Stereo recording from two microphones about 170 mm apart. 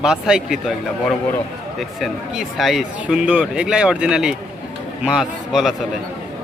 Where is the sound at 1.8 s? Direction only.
Centre (ahead or behind).